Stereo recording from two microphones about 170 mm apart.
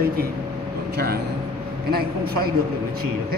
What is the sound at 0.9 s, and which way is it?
A man's voice, 65° right (ahead or behind).